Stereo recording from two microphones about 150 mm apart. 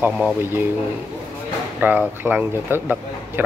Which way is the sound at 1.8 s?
10° right (ahead or behind).